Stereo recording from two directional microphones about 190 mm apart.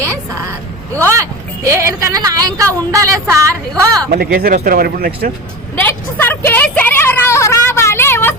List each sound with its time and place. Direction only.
1.0 s a woman's voice: 15° right (ahead or behind)
4.1 s speech: 55° right (ahead or behind)
5.8 s a sound: 10° left (ahead or behind)